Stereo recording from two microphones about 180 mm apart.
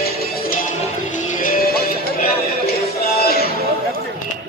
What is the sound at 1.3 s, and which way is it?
Music, 50° left (ahead or behind).